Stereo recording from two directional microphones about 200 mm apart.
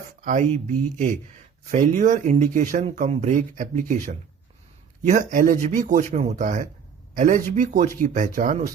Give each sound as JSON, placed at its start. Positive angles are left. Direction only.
{"t": 0.3, "sound": "speech", "side_deg": -40}